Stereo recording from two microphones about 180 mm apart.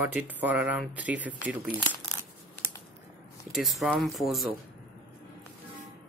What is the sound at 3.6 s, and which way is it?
Speech, centre (ahead or behind).